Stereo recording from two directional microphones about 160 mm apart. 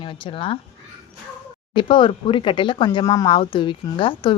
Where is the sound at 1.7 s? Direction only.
30° left (ahead or behind).